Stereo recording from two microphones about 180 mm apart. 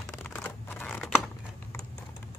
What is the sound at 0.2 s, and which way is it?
Computer keyboard, 10° left (ahead or behind).